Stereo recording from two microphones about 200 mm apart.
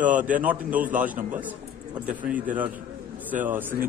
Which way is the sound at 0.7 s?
40° right (ahead or behind).